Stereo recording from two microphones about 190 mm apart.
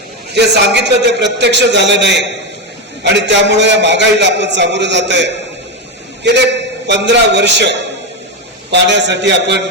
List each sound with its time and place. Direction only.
0.3 s a man's voice: 65° right (ahead or behind)